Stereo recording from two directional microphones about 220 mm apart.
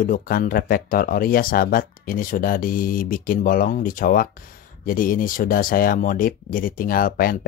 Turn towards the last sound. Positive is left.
turn(degrees=40)  # may be behind; listen again after turning